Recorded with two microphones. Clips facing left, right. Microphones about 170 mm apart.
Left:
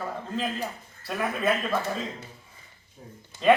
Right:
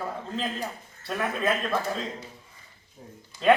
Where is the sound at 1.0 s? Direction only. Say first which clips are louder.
Left 1 dB; centre (ahead or behind).